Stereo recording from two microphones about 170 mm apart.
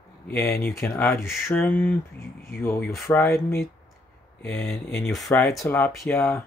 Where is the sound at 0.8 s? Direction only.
Centre (ahead or behind); by 3.2 s 20° left (ahead or behind).